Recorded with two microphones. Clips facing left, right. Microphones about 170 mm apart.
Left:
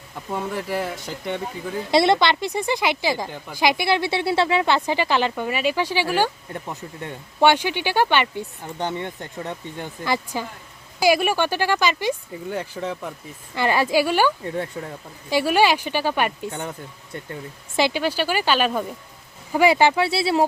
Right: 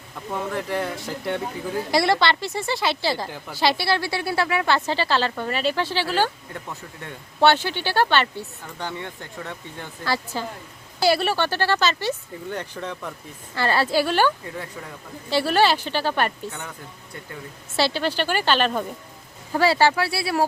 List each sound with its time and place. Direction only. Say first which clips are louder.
0.3 s speech: even; 5° left (ahead or behind)
1.9 s speech: left 3 dB; 20° left (ahead or behind)
16.5 s speech: left 5 dB; 30° left (ahead or behind)
17.7 s speech: left 1 dB; 15° left (ahead or behind)